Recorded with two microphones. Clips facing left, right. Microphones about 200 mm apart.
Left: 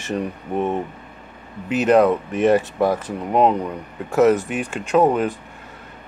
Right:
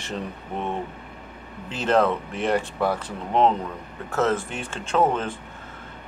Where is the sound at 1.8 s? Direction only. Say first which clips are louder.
Left 6 dB; 15° left (ahead or behind).